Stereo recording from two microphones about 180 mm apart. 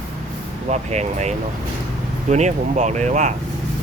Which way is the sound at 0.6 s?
40° right (ahead or behind).